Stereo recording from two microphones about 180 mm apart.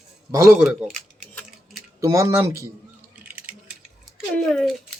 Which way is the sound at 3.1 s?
10° right (ahead or behind).